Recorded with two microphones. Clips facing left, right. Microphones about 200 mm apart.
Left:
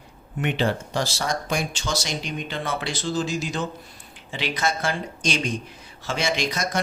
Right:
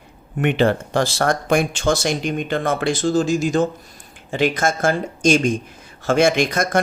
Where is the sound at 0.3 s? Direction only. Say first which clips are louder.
Right 7 dB; 55° right (ahead or behind).